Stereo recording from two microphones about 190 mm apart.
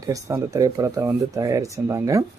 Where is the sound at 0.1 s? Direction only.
15° right (ahead or behind).